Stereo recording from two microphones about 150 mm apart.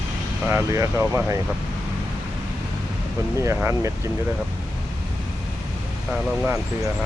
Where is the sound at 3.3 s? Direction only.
20° right (ahead or behind).